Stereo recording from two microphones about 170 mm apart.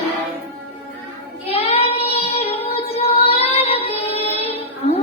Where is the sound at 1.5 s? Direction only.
35° left (ahead or behind).